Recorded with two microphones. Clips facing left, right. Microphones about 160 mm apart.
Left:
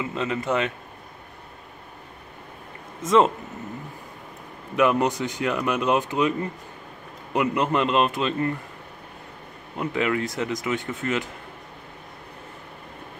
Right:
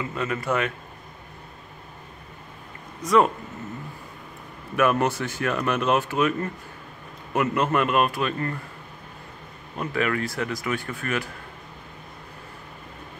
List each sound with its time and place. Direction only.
0.0 s speech: 20° left (ahead or behind)
3.0 s speech: 25° left (ahead or behind)
4.7 s speech: 15° left (ahead or behind)
9.8 s speech: 20° left (ahead or behind)